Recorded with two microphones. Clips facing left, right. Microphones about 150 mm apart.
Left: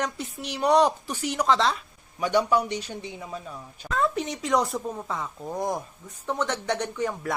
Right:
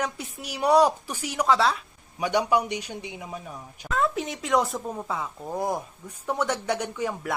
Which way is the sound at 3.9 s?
Centre (ahead or behind).